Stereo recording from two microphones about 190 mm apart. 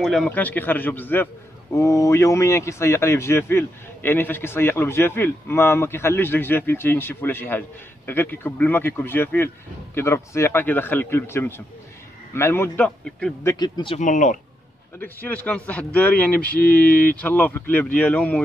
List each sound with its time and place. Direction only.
0.0 s a man's voice: centre (ahead or behind)
13.5 s speech: 25° left (ahead or behind)
13.9 s speech: 40° left (ahead or behind)
15.0 s a man's voice: 10° left (ahead or behind)